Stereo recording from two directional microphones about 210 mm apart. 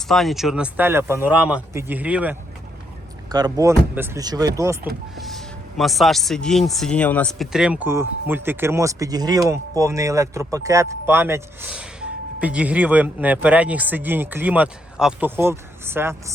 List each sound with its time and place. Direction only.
0.1 s a man's voice: centre (ahead or behind)
3.2 s a man's voice: 20° right (ahead or behind)
5.1 s a man's voice: centre (ahead or behind)